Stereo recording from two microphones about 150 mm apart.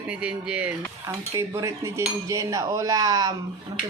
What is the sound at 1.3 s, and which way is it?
Speech, 20° right (ahead or behind).